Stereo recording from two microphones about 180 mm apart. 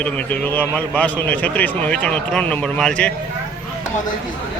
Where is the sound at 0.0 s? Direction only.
10° left (ahead or behind).